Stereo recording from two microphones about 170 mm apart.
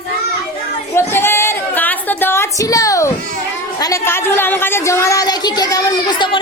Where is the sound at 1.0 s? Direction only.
15° left (ahead or behind).